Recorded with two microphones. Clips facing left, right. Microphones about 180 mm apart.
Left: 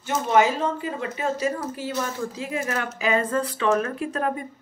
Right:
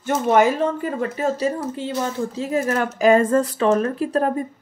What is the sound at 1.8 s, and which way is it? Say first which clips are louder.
Speech: right 4 dB; 25° right (ahead or behind).